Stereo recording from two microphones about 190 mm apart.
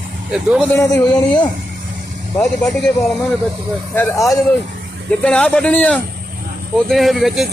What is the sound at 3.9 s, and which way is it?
Speech, 15° left (ahead or behind).